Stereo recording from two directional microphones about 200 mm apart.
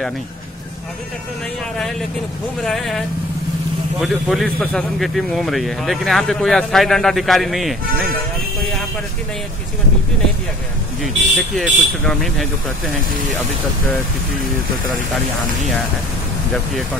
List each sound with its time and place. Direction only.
2.6 s a man's voice: centre (ahead or behind)
4.0 s a man's voice: centre (ahead or behind)
11.0 s a man's voice: 5° left (ahead or behind)